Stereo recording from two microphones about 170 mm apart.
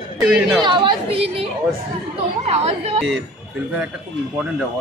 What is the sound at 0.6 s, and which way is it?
Speech, 30° right (ahead or behind).